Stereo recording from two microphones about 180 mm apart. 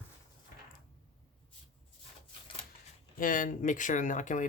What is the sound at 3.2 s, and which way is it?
Speech, 50° left (ahead or behind).